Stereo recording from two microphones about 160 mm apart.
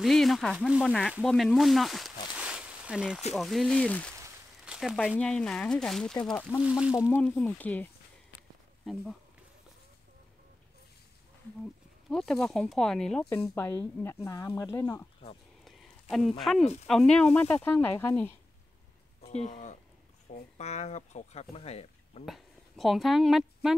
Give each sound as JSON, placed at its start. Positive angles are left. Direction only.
{"t": 0.0, "sound": "speech", "side_deg": 0}
{"t": 1.2, "sound": "a sound", "side_deg": 0}
{"t": 3.3, "sound": "speech", "side_deg": 0}
{"t": 6.6, "sound": "speech", "side_deg": -5}
{"t": 7.1, "sound": "speech", "side_deg": 10}
{"t": 8.4, "sound": "a sound", "side_deg": 0}
{"t": 12.1, "sound": "speech", "side_deg": 0}
{"t": 15.6, "sound": "a sound", "side_deg": 0}
{"t": 16.8, "sound": "speech", "side_deg": 5}
{"t": 20.5, "sound": "speech", "side_deg": 45}
{"t": 22.2, "sound": "speech", "side_deg": 0}